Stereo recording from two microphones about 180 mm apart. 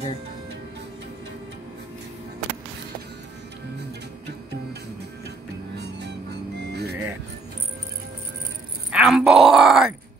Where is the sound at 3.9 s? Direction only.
65° right (ahead or behind).